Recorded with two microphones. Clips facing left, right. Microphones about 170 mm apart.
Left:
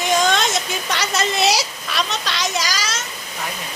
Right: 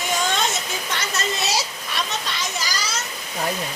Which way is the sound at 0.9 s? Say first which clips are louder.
Left 6 dB; 80° left.